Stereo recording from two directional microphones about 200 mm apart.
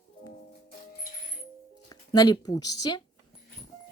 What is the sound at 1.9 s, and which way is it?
Speech, 20° left (ahead or behind).